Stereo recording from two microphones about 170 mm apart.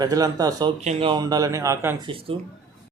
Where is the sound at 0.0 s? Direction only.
20° right (ahead or behind).